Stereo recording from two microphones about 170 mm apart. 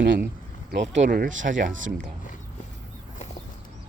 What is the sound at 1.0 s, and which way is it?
Speech, 50° right (ahead or behind).